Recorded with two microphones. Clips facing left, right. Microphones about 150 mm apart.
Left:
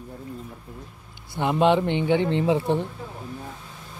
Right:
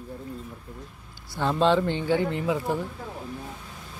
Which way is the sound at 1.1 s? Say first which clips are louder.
Left 2 dB; 20° left (ahead or behind).